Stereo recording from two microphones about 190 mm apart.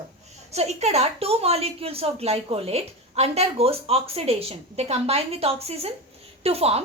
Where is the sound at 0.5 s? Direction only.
35° right (ahead or behind).